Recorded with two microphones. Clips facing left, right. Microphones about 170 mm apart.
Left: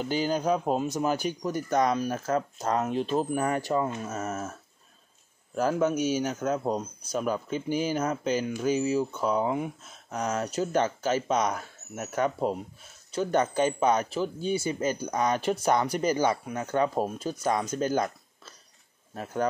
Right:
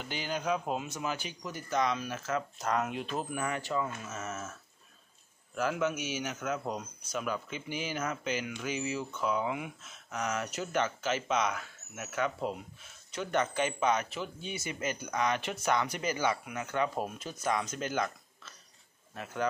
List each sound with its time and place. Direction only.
0.0 s speech: 35° left (ahead or behind)